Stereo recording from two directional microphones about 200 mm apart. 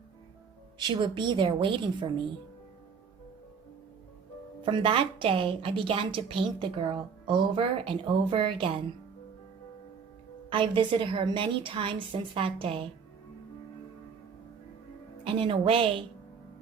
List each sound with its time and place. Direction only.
0.8 s a woman's voice: 25° right (ahead or behind)
4.6 s a woman's voice: 25° right (ahead or behind)
10.5 s a woman's voice: 25° right (ahead or behind)
15.2 s a woman's voice: 25° right (ahead or behind)